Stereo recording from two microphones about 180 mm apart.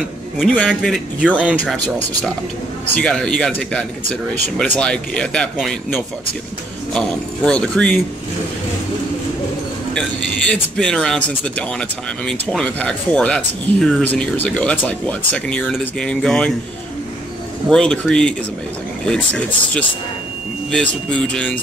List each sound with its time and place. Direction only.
0.4 s a man's voice: centre (ahead or behind)
2.9 s a man's voice: 5° left (ahead or behind)
9.9 s a man's voice: 5° left (ahead or behind)
17.6 s a man's voice: 5° left (ahead or behind)
20.7 s a man's voice: 5° left (ahead or behind)